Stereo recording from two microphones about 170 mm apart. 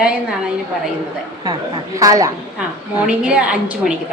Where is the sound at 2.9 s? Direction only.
5° right (ahead or behind).